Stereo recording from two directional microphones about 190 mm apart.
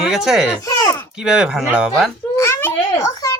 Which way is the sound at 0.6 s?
20° left (ahead or behind).